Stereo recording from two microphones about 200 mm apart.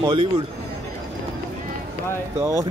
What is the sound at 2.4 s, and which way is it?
Speech, 15° right (ahead or behind).